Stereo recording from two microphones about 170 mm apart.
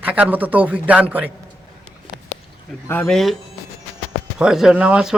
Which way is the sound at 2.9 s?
5° left (ahead or behind).